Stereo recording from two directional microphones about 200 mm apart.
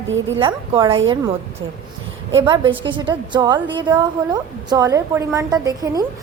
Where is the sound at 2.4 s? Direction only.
25° right (ahead or behind).